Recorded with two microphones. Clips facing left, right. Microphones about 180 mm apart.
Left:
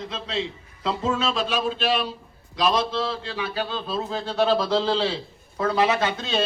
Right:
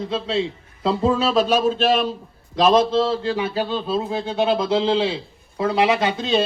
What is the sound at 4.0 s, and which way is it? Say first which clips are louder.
Speech: right 2 dB; 10° right (ahead or behind).